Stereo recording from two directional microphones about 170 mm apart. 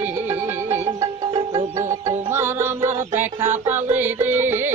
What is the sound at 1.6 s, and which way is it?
Music, 45° right (ahead or behind).